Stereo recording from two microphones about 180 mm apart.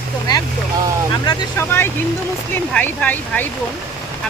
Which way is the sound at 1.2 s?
20° left (ahead or behind).